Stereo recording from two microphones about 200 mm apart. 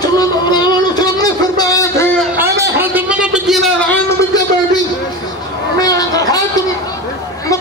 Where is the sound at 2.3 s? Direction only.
15° right (ahead or behind); by 4.0 s centre (ahead or behind).